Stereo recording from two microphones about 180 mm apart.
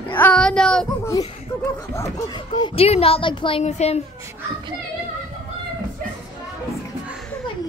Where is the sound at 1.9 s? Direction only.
20° left (ahead or behind); by 4.0 s 35° left (ahead or behind).